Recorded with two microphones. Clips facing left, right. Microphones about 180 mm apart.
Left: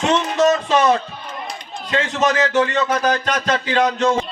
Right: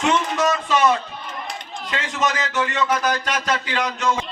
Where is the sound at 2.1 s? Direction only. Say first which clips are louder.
Left 6 dB; 40° left (ahead or behind).